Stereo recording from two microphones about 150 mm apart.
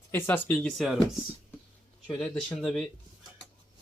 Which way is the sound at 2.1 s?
Centre (ahead or behind).